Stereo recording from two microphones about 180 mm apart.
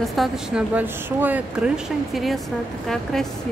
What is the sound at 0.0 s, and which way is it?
Speech, centre (ahead or behind).